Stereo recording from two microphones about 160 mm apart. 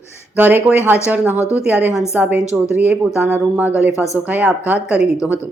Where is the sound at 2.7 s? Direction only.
5° right (ahead or behind).